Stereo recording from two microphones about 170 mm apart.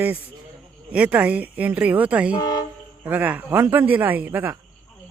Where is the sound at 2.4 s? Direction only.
20° left (ahead or behind).